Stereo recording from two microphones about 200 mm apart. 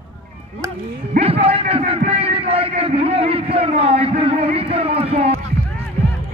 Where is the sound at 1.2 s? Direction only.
30° right (ahead or behind).